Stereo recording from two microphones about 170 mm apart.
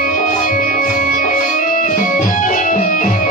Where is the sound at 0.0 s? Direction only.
50° left (ahead or behind).